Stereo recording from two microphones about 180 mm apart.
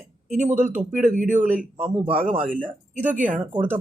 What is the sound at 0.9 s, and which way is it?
Speech, 45° right (ahead or behind).